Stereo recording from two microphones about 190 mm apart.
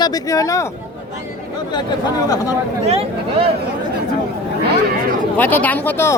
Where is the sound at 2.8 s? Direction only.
30° right (ahead or behind).